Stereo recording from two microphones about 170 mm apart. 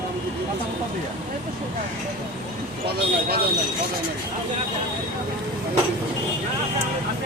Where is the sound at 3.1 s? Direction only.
65° right (ahead or behind).